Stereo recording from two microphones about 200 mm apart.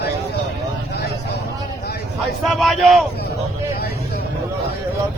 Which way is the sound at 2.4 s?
Centre (ahead or behind).